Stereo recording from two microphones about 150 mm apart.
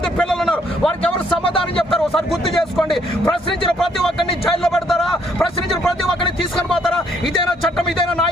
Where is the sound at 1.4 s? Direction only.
35° left (ahead or behind).